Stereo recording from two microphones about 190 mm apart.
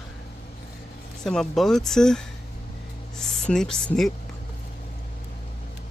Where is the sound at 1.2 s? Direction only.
Centre (ahead or behind).